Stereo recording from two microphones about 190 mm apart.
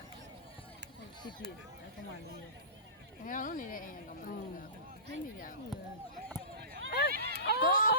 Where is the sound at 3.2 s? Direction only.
45° left (ahead or behind).